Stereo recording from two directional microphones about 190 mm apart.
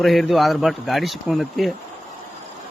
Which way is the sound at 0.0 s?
Centre (ahead or behind).